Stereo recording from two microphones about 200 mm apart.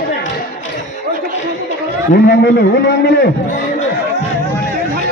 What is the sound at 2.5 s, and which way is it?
Speech, 55° left (ahead or behind).